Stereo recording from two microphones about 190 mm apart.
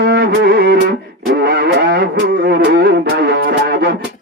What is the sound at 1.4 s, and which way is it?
Vehicle, 60° right (ahead or behind).